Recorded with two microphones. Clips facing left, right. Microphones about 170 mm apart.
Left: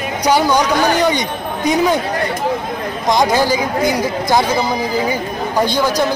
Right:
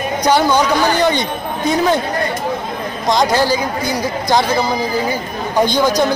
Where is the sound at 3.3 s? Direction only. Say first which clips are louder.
Left 1 dB; 20° left (ahead or behind).